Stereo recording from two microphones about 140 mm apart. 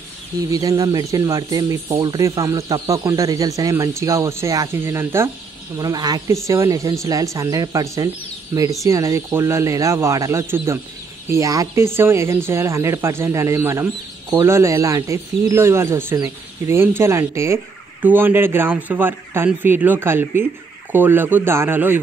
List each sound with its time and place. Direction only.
0.5 s speech: 25° right (ahead or behind)